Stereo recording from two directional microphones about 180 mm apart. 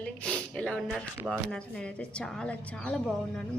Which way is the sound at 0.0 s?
5° left (ahead or behind).